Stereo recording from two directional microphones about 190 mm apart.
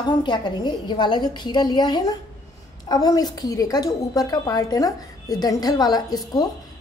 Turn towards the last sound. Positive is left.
turn(degrees=20)  # may be behind; listen again after turning